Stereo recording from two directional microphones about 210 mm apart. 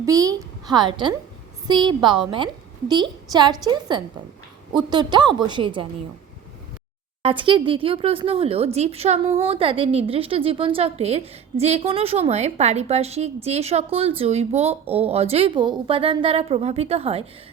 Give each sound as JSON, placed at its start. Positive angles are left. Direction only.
{"t": 0.0, "sound": "a woman's voice", "side_deg": -15}
{"t": 7.2, "sound": "speech", "side_deg": -25}